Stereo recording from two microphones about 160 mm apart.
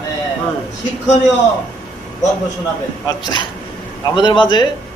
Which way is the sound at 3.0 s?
25° left (ahead or behind).